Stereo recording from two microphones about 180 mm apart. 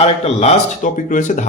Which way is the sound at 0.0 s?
35° left (ahead or behind).